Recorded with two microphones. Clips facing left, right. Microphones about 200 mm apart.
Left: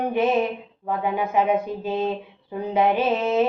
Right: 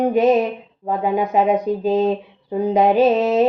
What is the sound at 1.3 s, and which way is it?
Speech, 40° right (ahead or behind).